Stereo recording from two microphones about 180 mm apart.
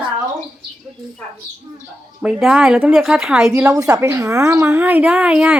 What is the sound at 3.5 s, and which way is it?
A woman's voice, 15° right (ahead or behind).